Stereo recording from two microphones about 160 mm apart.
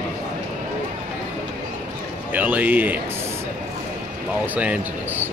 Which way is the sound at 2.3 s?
10° right (ahead or behind).